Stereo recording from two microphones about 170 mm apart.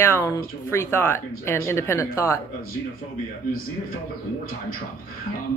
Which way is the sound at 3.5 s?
60° left (ahead or behind).